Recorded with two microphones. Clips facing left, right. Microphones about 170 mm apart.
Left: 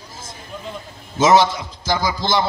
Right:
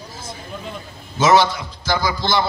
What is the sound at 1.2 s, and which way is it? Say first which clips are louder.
A man's voice: left 1 dB; 20° left (ahead or behind).